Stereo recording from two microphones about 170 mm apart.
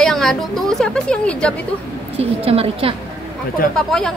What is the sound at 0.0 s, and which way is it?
A woman's voice, centre (ahead or behind).